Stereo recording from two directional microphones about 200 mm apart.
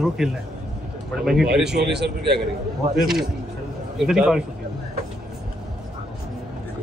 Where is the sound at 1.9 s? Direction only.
55° right (ahead or behind).